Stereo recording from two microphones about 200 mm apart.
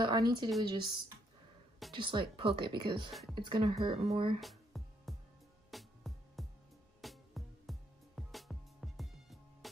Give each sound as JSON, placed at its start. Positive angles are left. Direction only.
{"t": 0.0, "sound": "speech", "side_deg": -20}
{"t": 3.1, "sound": "speech", "side_deg": 0}
{"t": 3.3, "sound": "speech", "side_deg": -20}
{"t": 4.0, "sound": "speech", "side_deg": -35}
{"t": 4.4, "sound": "music", "side_deg": 0}